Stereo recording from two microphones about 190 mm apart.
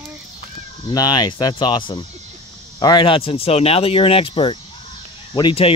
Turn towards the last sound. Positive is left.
turn(degrees=25)  # may be behind; listen again after turning